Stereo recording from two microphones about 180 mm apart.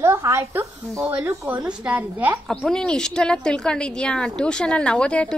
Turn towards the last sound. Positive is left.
turn(degrees=5)  # may be behind; listen again after turning